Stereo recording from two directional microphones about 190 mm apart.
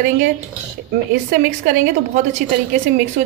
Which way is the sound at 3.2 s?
45° right (ahead or behind).